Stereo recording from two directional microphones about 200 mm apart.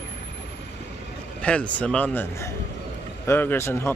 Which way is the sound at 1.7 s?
5° left (ahead or behind).